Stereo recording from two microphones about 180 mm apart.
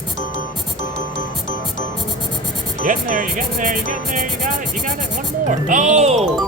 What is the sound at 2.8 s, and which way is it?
A man's voice, 45° right (ahead or behind).